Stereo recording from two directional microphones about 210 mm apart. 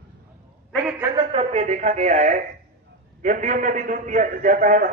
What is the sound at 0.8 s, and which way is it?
Speech, 10° right (ahead or behind).